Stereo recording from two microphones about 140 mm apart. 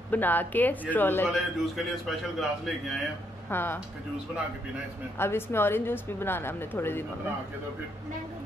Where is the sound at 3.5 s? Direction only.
15° left (ahead or behind).